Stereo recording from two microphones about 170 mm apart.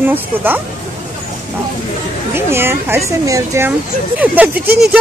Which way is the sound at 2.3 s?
15° right (ahead or behind).